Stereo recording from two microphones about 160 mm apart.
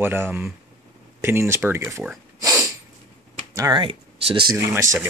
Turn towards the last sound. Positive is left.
turn(degrees=-15)  # may be behind; listen again after turning